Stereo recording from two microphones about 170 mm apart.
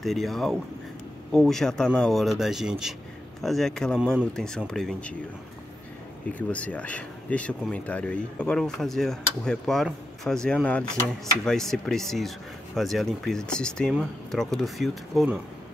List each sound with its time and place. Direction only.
0.0 s speech: centre (ahead or behind)
6.3 s speech: 10° left (ahead or behind)